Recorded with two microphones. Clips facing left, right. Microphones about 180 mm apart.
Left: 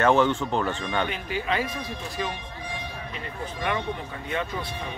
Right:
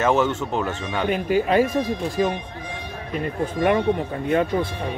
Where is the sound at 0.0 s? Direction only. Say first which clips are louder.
Right 1 dB; 5° right (ahead or behind).